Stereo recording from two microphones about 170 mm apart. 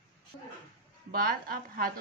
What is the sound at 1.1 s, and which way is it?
Speech, 60° right (ahead or behind).